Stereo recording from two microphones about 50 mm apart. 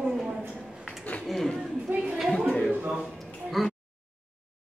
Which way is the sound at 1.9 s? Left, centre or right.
Right.